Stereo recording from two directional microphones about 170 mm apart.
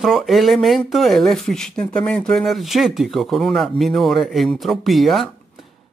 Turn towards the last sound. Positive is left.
turn(degrees=0)  # may be behind; listen again after turning